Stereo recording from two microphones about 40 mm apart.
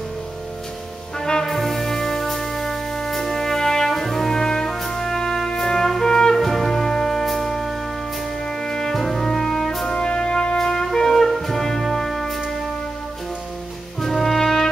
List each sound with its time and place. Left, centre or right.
1.2 s brass instrument: centre
1.5 s music: centre
9.9 s music: left
10.6 s music: centre
14.0 s brass instrument: centre